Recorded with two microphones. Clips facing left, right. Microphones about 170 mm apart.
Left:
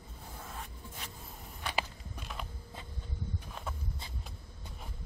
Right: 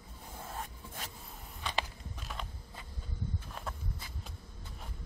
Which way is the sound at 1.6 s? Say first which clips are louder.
Left 1 dB; 10° left (ahead or behind).